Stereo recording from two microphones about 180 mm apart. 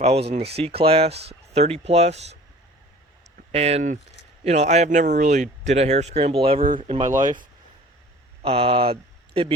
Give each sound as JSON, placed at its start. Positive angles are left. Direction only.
{"t": 0.0, "sound": "speech", "side_deg": -35}
{"t": 3.5, "sound": "speech", "side_deg": -35}
{"t": 8.4, "sound": "speech", "side_deg": -30}